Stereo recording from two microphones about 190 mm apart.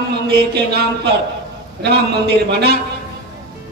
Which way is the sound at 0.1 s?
60° right (ahead or behind).